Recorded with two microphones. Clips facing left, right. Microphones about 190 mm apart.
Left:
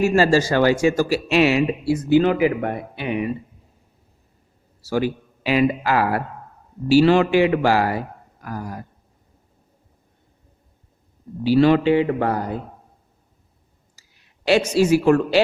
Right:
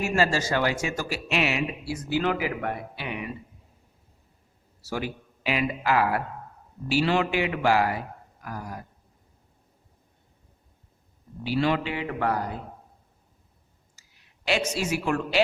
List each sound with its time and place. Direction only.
0.0 s speech: 30° left (ahead or behind)
4.8 s speech: 30° left (ahead or behind)
11.4 s speech: 35° left (ahead or behind)
14.4 s speech: 35° left (ahead or behind)